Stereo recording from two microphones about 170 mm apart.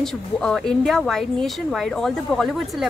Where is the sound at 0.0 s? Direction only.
5° left (ahead or behind).